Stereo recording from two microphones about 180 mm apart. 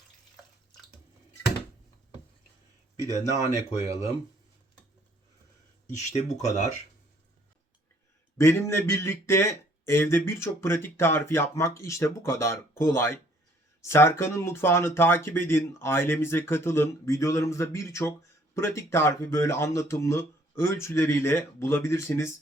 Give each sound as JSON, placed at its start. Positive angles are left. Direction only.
{"t": 3.3, "sound": "speech", "side_deg": 35}
{"t": 5.9, "sound": "speech", "side_deg": 40}
{"t": 8.4, "sound": "speech", "side_deg": 15}